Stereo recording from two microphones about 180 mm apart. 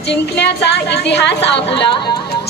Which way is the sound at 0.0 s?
70° left (ahead or behind).